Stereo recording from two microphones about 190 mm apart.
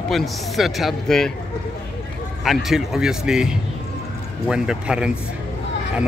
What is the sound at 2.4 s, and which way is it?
Speech, centre (ahead or behind).